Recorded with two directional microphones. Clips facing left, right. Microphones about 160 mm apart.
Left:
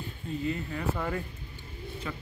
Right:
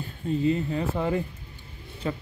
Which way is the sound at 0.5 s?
25° right (ahead or behind).